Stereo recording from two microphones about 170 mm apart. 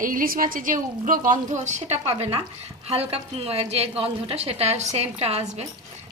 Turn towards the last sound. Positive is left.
turn(degrees=-40)  # may be behind; listen again after turning